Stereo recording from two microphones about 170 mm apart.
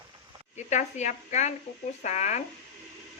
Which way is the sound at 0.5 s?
45° left (ahead or behind).